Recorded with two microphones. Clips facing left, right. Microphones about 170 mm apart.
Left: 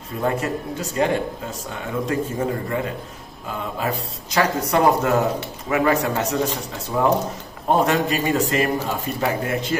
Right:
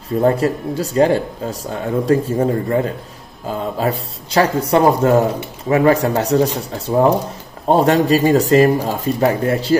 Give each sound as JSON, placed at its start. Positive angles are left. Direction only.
{"t": 0.2, "sound": "speech", "side_deg": -35}